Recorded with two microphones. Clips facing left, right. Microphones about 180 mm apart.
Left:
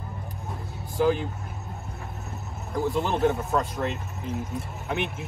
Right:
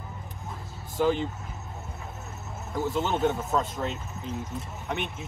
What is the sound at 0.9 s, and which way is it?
Speech, 5° left (ahead or behind).